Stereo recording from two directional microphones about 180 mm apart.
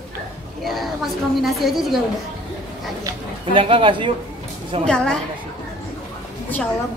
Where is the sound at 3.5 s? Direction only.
30° right (ahead or behind).